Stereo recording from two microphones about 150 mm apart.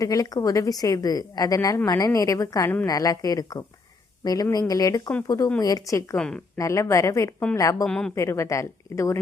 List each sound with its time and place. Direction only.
0.0 s a woman's voice: 25° left (ahead or behind)
6.1 s speech: 5° left (ahead or behind)
6.6 s a woman's voice: 20° left (ahead or behind)
7.9 s speech: 5° left (ahead or behind)
8.1 s a woman's voice: 20° left (ahead or behind)